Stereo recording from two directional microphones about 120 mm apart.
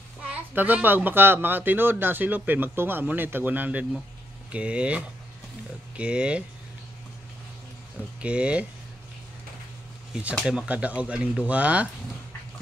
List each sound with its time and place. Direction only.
0.3 s speech: 15° right (ahead or behind)
8.2 s speech: 10° right (ahead or behind)
10.4 s speech: 5° right (ahead or behind)